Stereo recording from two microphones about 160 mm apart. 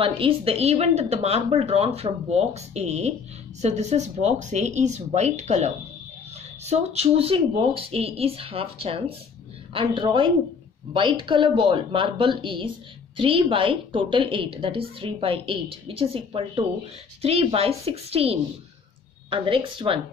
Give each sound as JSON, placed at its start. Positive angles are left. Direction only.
{"t": 0.0, "sound": "a woman's voice", "side_deg": -35}